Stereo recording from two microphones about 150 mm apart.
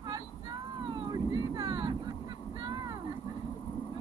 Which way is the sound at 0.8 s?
30° right (ahead or behind).